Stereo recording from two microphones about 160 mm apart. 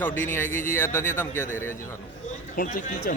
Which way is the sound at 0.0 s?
15° left (ahead or behind).